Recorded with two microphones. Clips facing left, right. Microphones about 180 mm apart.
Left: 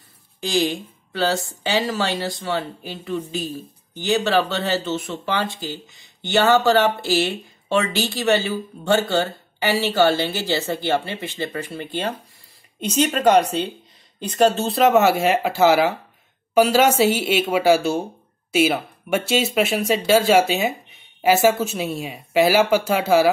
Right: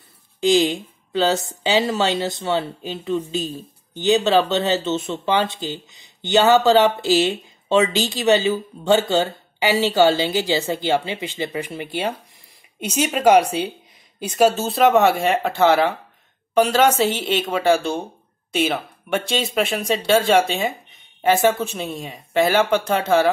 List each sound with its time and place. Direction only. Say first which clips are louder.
0.4 s speech: right 5 dB; 20° right (ahead or behind); by 23.3 s 10° left (ahead or behind)